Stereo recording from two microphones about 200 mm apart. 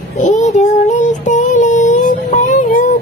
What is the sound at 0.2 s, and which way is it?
Child singing, 40° left (ahead or behind).